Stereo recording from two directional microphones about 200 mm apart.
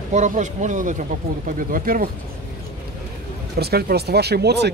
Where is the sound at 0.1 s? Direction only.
35° right (ahead or behind).